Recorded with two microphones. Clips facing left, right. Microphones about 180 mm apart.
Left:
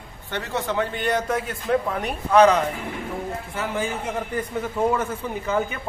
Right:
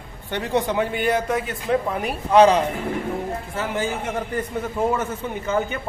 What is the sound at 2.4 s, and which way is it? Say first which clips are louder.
Speech: right 1 dB; 30° right (ahead or behind).